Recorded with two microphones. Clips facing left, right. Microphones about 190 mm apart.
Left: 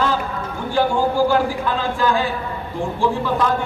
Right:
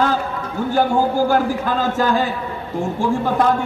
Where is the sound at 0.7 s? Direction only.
45° right (ahead or behind).